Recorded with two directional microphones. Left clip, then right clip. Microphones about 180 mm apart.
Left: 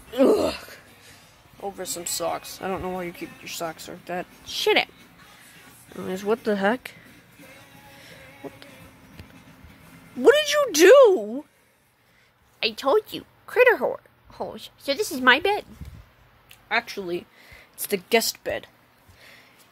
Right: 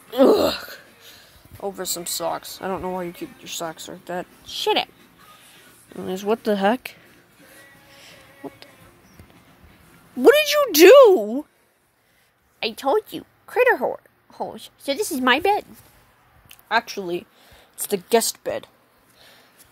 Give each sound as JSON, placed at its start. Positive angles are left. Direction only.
{"t": 0.1, "sound": "wail", "side_deg": -15}
{"t": 1.6, "sound": "speech", "side_deg": -30}
{"t": 2.0, "sound": "speech", "side_deg": -10}
{"t": 4.5, "sound": "speech", "side_deg": 5}
{"t": 5.9, "sound": "speech", "side_deg": -10}
{"t": 7.9, "sound": "music", "side_deg": -15}
{"t": 10.2, "sound": "speech", "side_deg": -15}
{"t": 12.5, "sound": "speech", "side_deg": -10}
{"t": 16.4, "sound": "a sound", "side_deg": -20}
{"t": 17.8, "sound": "speech", "side_deg": -10}
{"t": 19.1, "sound": "a sound", "side_deg": 0}